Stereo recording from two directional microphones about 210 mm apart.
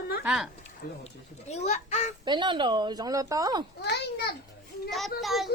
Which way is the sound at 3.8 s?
50° left (ahead or behind).